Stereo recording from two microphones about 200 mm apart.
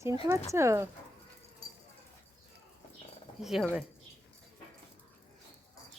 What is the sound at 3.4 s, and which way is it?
Speech, centre (ahead or behind).